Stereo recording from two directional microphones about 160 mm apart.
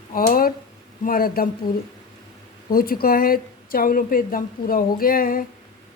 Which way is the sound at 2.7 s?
65° left (ahead or behind).